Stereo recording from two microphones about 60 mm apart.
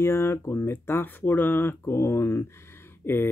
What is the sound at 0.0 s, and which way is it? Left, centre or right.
Speech, left.